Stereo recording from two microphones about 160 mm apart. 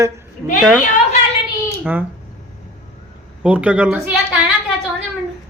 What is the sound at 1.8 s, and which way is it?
Speech, 10° right (ahead or behind).